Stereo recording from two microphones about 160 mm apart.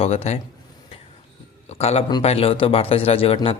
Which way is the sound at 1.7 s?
40° left (ahead or behind).